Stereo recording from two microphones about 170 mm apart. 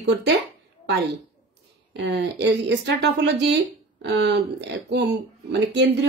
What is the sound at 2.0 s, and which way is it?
Speech, 90° right.